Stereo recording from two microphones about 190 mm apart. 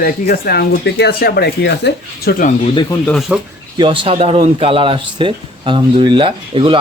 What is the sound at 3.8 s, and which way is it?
Speech, 30° right (ahead or behind).